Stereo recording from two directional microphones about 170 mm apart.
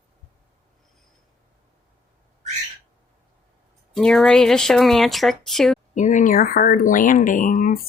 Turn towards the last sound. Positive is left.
turn(degrees=50)  # may be behind; listen again after turning